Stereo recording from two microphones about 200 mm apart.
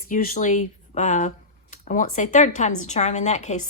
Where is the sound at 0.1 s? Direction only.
45° left (ahead or behind).